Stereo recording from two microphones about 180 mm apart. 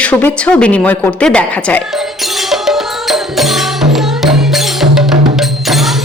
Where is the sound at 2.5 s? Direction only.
Centre (ahead or behind).